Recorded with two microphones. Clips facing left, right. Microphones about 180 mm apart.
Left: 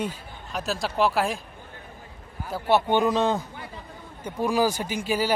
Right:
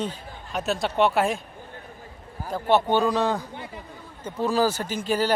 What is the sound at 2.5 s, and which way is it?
A man's voice, 10° left (ahead or behind).